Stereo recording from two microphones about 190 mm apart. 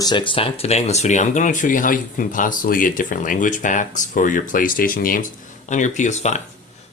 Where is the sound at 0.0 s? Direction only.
25° left (ahead or behind).